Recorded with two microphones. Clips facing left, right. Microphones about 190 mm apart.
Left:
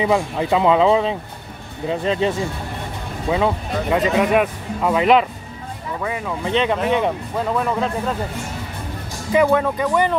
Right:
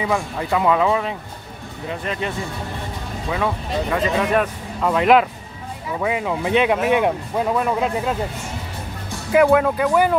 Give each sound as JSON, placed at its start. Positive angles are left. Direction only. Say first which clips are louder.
{"t": 0.0, "sound": "speech", "louder": "left 4 dB", "side_deg": 20}
{"t": 4.3, "sound": "speech", "louder": "left 2 dB", "side_deg": 5}
{"t": 5.9, "sound": "speech", "louder": "right 4 dB", "side_deg": -15}
{"t": 9.3, "sound": "speech", "louder": "right 2 dB", "side_deg": -5}